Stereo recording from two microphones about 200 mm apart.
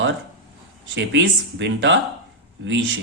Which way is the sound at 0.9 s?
65° right (ahead or behind).